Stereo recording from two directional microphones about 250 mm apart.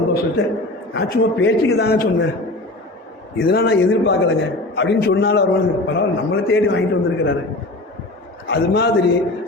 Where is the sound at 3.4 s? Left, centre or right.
Left.